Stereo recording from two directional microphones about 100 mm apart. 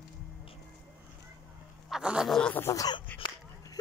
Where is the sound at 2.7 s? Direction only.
40° left (ahead or behind).